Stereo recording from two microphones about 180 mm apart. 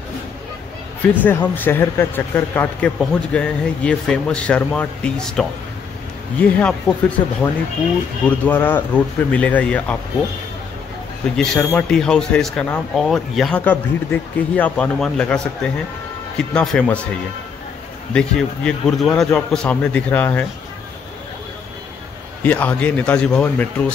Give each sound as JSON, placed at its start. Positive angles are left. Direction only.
{"t": 1.2, "sound": "a man's voice", "side_deg": 10}
{"t": 8.5, "sound": "a man's voice", "side_deg": 10}
{"t": 11.3, "sound": "speech", "side_deg": 5}
{"t": 18.1, "sound": "speech", "side_deg": 5}
{"t": 22.4, "sound": "a man's voice", "side_deg": 10}